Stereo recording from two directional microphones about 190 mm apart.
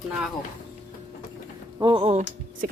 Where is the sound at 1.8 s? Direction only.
30° right (ahead or behind).